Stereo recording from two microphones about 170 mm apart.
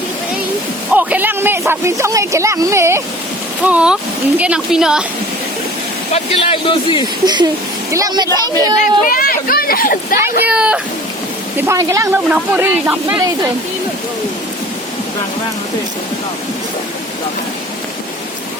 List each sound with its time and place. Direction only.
0.9 s a woman's voice: 10° right (ahead or behind)
6.1 s speech: 35° left (ahead or behind)
7.3 s speech: 25° right (ahead or behind)
9.0 s speech: 55° left (ahead or behind)
10.2 s speech: 10° right (ahead or behind)
11.5 s speech: 20° right (ahead or behind)